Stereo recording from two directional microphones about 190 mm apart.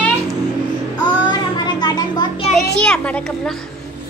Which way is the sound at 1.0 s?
20° left (ahead or behind).